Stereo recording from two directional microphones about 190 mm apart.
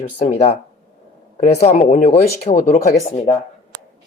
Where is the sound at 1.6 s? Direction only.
35° left (ahead or behind).